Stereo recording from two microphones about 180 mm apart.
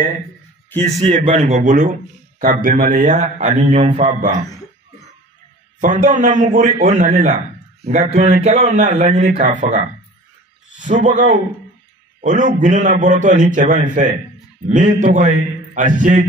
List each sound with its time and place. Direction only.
0.7 s a man's voice: 10° left (ahead or behind)
1.1 s a man's voice: 30° right (ahead or behind)
1.4 s speech: 45° right (ahead or behind)
5.8 s a man's voice: 45° right (ahead or behind)